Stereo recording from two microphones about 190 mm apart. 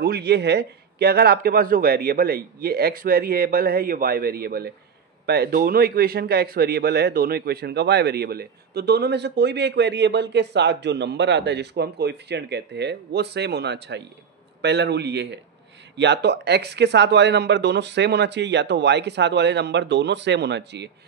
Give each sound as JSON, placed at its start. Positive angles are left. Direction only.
{"t": 0.0, "sound": "a man's voice", "side_deg": -60}